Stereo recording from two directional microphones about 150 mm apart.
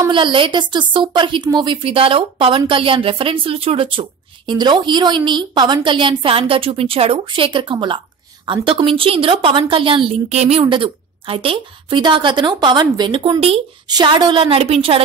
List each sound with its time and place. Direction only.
0.1 s a woman's voice: 35° right (ahead or behind)